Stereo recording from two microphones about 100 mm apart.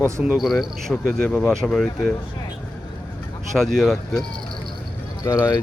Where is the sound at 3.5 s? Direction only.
5° left (ahead or behind).